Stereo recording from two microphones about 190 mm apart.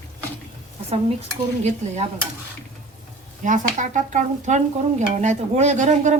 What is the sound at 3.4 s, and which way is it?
Speech, 40° right (ahead or behind).